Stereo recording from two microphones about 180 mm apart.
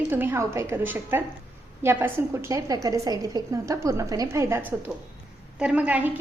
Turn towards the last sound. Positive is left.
turn(degrees=-10)  # may be behind; listen again after turning